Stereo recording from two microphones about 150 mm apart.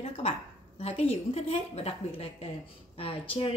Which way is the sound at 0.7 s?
45° left (ahead or behind).